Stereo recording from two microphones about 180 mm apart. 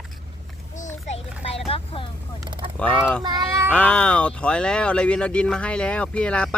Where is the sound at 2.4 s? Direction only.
25° right (ahead or behind).